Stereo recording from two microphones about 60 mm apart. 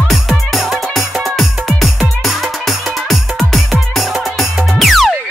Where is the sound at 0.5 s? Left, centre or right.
Centre.